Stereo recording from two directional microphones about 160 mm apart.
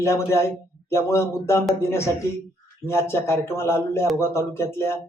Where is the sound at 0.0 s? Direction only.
15° left (ahead or behind).